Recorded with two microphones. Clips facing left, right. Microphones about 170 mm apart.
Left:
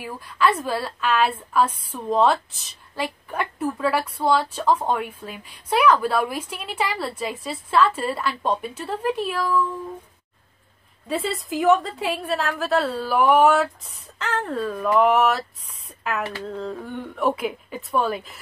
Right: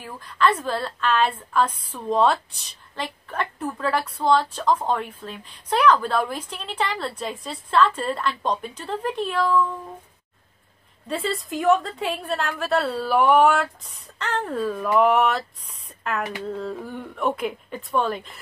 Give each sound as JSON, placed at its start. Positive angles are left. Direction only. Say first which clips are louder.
{"t": 0.0, "sound": "a woman's voice", "louder": "even", "side_deg": 10}
{"t": 11.1, "sound": "a woman's voice", "louder": "left 1 dB", "side_deg": 0}
{"t": 16.2, "sound": "a sound", "louder": "right 2 dB", "side_deg": -15}
{"t": 16.4, "sound": "a woman's voice", "louder": "even", "side_deg": 0}